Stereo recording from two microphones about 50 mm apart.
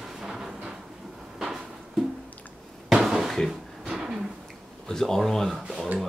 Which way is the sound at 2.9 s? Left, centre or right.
Centre.